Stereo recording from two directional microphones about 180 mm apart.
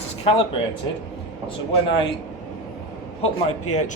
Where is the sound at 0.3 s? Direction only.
30° left (ahead or behind).